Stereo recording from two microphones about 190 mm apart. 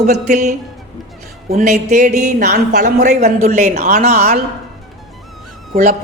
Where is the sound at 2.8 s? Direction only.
40° right (ahead or behind).